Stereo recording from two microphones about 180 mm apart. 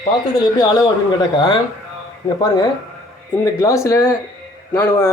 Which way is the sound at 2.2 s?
20° left (ahead or behind).